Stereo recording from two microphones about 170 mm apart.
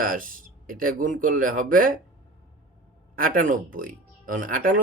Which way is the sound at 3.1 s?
55° right (ahead or behind).